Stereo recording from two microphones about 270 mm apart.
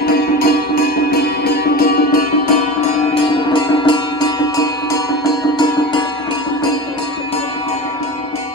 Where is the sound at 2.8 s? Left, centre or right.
Centre.